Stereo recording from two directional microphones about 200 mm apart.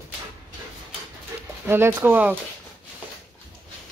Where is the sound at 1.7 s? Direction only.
10° right (ahead or behind).